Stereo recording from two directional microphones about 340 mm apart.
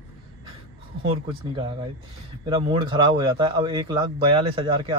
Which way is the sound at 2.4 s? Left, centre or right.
Centre.